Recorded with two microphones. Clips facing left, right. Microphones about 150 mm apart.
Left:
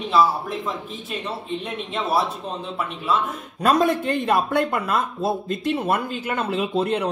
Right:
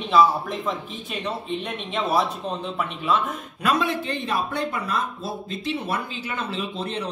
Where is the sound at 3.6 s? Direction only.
45° left (ahead or behind).